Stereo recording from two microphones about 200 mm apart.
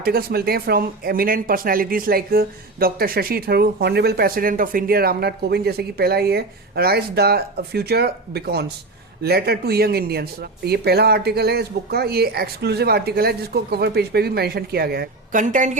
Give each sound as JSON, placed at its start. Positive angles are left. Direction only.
{"t": 0.0, "sound": "speech", "side_deg": -50}